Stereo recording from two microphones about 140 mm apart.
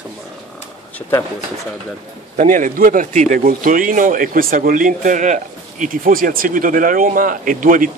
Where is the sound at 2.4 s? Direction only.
70° right (ahead or behind).